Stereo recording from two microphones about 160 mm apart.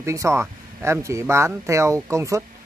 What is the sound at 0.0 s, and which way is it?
Speech, 20° right (ahead or behind).